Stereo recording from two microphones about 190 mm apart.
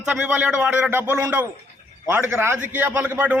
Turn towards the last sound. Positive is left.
turn(degrees=-10)  # may be behind; listen again after turning